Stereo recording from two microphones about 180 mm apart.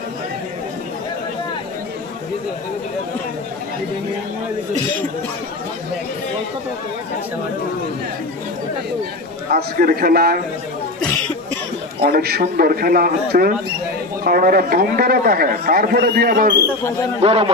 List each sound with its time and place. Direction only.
9.5 s a man's voice: 55° right (ahead or behind)
12.0 s a man's voice: 60° right (ahead or behind)
17.2 s a man's voice: 30° right (ahead or behind)